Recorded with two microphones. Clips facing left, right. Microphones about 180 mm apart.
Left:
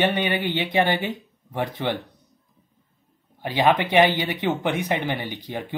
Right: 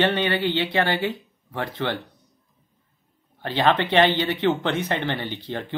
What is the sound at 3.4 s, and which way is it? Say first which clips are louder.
Speech: left 1 dB; 15° left (ahead or behind).